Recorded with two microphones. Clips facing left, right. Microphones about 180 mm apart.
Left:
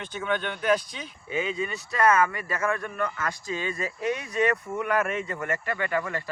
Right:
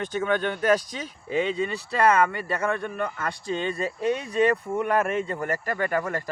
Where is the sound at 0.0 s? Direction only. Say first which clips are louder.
Right 4 dB; 45° right (ahead or behind).